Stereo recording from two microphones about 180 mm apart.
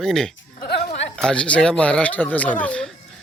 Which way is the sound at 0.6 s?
60° left (ahead or behind).